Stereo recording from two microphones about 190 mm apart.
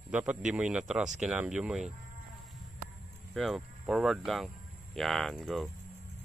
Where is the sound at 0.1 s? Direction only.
5° right (ahead or behind).